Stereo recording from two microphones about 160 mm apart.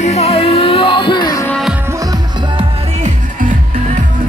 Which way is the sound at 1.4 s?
Centre (ahead or behind).